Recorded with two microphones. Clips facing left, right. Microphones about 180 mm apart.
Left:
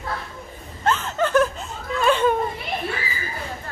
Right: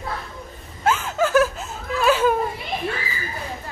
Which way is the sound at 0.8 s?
10° right (ahead or behind).